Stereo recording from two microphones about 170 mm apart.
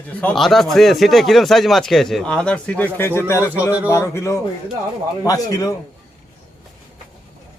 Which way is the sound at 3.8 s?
15° left (ahead or behind).